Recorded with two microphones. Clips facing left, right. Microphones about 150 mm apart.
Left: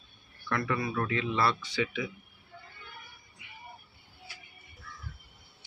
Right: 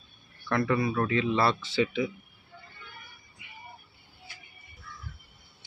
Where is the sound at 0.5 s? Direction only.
30° right (ahead or behind).